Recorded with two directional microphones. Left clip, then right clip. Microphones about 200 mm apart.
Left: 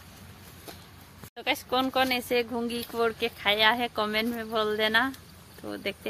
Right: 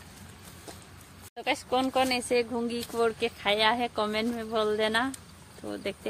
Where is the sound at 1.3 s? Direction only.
Centre (ahead or behind).